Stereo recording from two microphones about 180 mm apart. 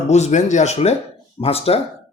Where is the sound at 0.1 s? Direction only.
40° left (ahead or behind).